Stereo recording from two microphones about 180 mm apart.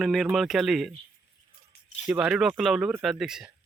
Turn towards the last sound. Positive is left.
turn(degrees=-5)  # may be behind; listen again after turning